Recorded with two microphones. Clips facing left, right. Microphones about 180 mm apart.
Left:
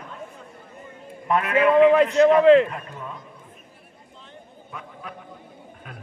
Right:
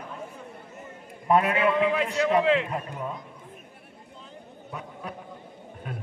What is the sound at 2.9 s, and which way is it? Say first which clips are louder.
Speech: right 3 dB; 15° right (ahead or behind).